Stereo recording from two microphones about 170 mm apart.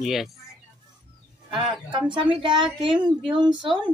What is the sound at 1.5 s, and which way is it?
Speech, 30° right (ahead or behind).